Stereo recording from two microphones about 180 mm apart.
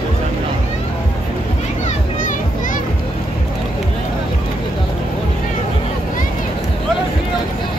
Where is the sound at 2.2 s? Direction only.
45° left (ahead or behind).